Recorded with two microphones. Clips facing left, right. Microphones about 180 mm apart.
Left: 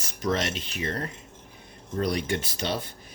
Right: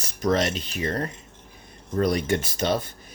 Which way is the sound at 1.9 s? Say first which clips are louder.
Right 4 dB; 50° right (ahead or behind).